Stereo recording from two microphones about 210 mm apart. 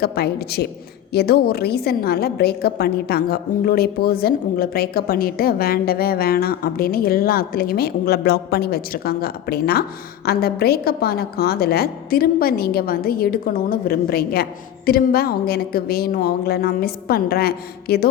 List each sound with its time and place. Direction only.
0.0 s a woman's voice: 50° left (ahead or behind)